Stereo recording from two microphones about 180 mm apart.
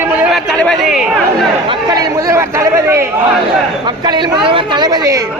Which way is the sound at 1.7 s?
20° right (ahead or behind).